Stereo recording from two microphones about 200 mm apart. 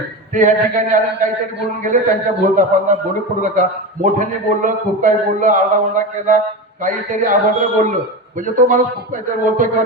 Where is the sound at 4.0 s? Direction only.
40° right (ahead or behind).